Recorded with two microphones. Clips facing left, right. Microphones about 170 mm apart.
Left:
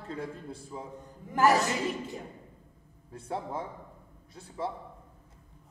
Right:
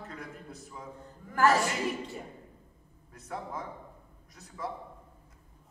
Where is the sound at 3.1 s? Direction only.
30° left (ahead or behind).